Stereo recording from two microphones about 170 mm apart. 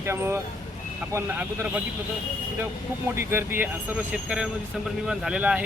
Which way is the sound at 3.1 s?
15° right (ahead or behind).